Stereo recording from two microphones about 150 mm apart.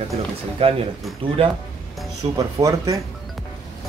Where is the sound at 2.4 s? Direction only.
20° right (ahead or behind).